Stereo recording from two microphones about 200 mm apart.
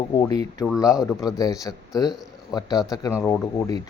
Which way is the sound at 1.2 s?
15° left (ahead or behind).